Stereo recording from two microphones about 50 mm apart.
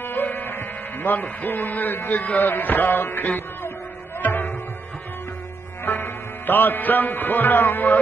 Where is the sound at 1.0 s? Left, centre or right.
Left.